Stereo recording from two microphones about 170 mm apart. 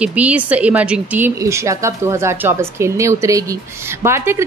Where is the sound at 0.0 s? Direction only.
10° right (ahead or behind).